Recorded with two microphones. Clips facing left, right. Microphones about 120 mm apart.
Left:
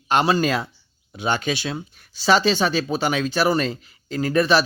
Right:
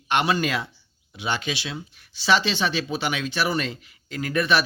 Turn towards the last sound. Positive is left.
turn(degrees=35)  # may be behind; listen again after turning